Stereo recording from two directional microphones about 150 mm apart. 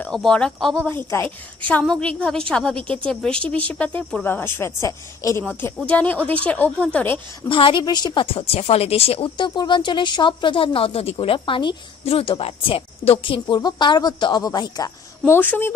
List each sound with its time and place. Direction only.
0.0 s speech: 5° left (ahead or behind)
0.8 s a woman's voice: 15° left (ahead or behind)
5.4 s a woman's voice: 5° left (ahead or behind)
7.4 s a woman's voice: 35° left (ahead or behind)
15.3 s a woman's voice: 15° left (ahead or behind)